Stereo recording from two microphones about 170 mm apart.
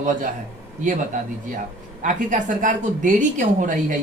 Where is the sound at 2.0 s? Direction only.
50° right (ahead or behind).